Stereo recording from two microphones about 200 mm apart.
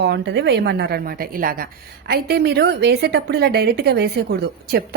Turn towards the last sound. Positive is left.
turn(degrees=-55)  # may be behind; listen again after turning